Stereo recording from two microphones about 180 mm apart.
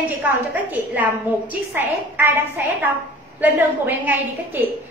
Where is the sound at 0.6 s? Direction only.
10° right (ahead or behind).